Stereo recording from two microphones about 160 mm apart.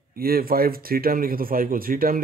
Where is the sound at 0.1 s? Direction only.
65° right (ahead or behind).